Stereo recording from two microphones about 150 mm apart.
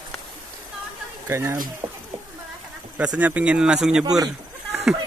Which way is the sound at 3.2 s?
10° right (ahead or behind).